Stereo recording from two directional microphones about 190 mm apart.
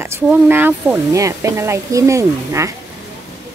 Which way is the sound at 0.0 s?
10° right (ahead or behind).